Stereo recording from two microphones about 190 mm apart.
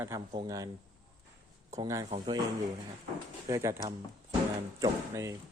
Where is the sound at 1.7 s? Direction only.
20° right (ahead or behind).